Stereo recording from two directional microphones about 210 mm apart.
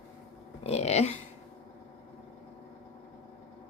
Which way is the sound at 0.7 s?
30° left (ahead or behind).